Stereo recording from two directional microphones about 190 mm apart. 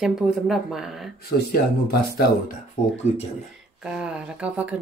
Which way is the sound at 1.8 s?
55° left (ahead or behind).